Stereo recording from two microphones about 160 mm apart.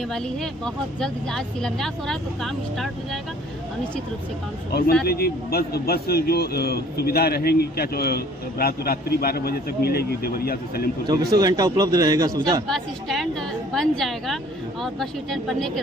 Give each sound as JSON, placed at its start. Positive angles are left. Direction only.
{"t": 1.0, "sound": "a woman's voice", "side_deg": 5}
{"t": 5.0, "sound": "a man's voice", "side_deg": 80}
{"t": 11.1, "sound": "a man's voice", "side_deg": -25}
{"t": 12.6, "sound": "a woman's voice", "side_deg": 0}